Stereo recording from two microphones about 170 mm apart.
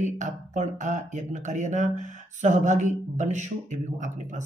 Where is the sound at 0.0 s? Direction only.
45° right (ahead or behind).